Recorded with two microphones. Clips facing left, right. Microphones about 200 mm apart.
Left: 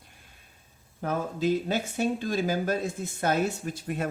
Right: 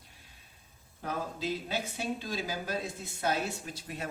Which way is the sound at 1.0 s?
50° left (ahead or behind).